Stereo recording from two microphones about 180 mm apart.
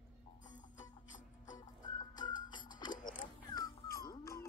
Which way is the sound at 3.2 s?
20° left (ahead or behind).